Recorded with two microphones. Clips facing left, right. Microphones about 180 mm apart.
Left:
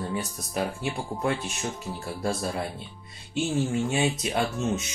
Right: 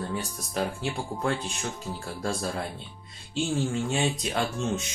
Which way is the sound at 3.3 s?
5° left (ahead or behind).